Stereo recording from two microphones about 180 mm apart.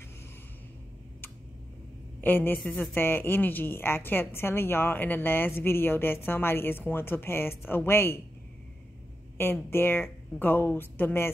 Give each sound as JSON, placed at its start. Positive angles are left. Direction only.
{"t": 2.2, "sound": "a woman's voice", "side_deg": 10}
{"t": 9.4, "sound": "a woman's voice", "side_deg": 10}